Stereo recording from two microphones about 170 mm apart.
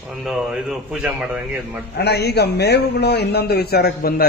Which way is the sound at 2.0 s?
75° left (ahead or behind).